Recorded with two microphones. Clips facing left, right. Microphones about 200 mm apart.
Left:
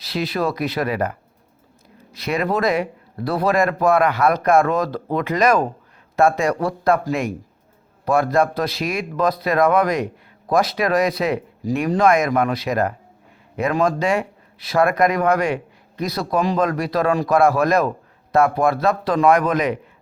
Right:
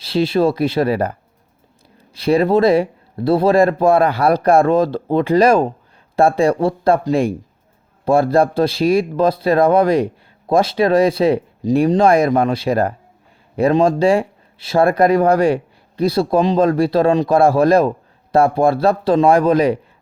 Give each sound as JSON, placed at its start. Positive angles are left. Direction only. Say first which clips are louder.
{"t": 0.0, "sound": "speech", "louder": "right 7 dB", "side_deg": -30}
{"t": 2.1, "sound": "speech", "louder": "right 8 dB", "side_deg": -30}